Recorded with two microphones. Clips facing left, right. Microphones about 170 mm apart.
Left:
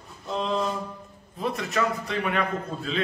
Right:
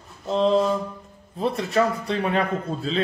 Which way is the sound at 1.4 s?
30° right (ahead or behind).